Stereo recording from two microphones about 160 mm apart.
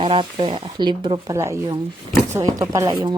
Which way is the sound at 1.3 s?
20° right (ahead or behind).